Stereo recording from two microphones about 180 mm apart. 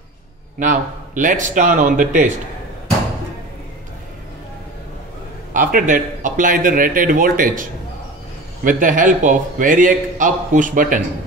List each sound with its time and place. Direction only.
0.6 s a man's voice: 45° right (ahead or behind)
5.5 s a man's voice: 50° right (ahead or behind)
8.6 s a man's voice: 50° right (ahead or behind)